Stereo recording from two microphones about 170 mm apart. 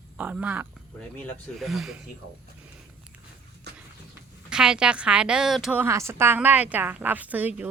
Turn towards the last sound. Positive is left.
turn(degrees=-10)  # may be behind; listen again after turning